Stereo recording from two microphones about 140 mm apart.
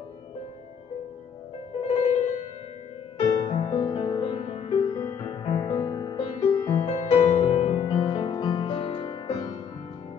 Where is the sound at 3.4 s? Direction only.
45° left (ahead or behind).